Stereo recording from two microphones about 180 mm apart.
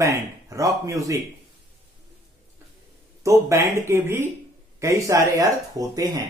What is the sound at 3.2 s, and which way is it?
Speech, 15° right (ahead or behind).